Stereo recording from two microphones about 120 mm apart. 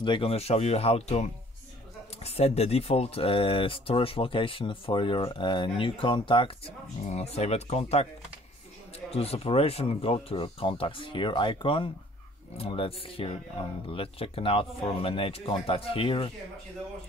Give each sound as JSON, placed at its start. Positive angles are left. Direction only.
{"t": 0.0, "sound": "speech", "side_deg": 45}
{"t": 7.1, "sound": "speech", "side_deg": 60}
{"t": 9.1, "sound": "speech", "side_deg": 55}